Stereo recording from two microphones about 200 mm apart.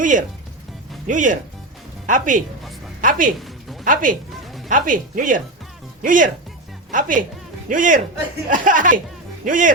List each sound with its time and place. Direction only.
0.0 s a woman's voice: 40° right (ahead or behind)
3.4 s music: centre (ahead or behind)
3.8 s speech: 40° right (ahead or behind)